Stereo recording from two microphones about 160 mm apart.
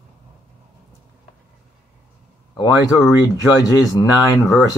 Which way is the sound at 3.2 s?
20° left (ahead or behind).